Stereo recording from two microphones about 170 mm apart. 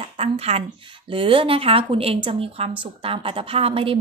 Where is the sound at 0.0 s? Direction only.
35° right (ahead or behind).